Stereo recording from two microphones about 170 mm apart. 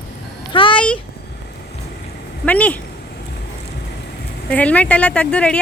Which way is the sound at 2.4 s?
10° left (ahead or behind).